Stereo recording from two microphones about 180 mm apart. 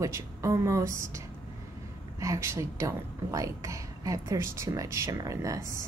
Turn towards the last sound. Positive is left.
turn(degrees=-15)  # may be behind; listen again after turning